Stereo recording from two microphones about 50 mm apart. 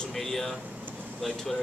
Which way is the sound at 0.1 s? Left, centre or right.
Centre.